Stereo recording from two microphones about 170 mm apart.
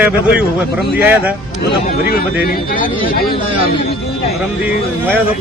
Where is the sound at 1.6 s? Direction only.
65° left (ahead or behind).